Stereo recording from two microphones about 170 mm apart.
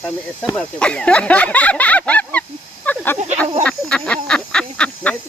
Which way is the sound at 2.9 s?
10° left (ahead or behind).